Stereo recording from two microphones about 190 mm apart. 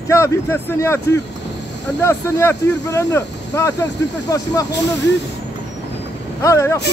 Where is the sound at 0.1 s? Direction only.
15° left (ahead or behind).